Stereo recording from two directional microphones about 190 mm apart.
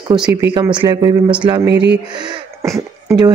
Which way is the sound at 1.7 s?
65° right (ahead or behind).